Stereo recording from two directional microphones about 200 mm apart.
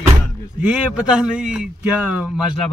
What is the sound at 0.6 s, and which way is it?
Speech, 5° right (ahead or behind).